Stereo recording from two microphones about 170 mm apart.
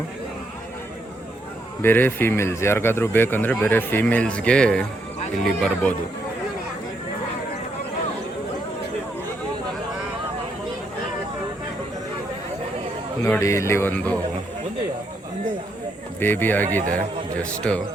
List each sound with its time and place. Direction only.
1.8 s speech: 10° left (ahead or behind)
13.2 s speech: 15° left (ahead or behind)
16.2 s speech: 10° left (ahead or behind)
16.8 s a man's voice: 50° right (ahead or behind)
17.4 s speech: 5° left (ahead or behind)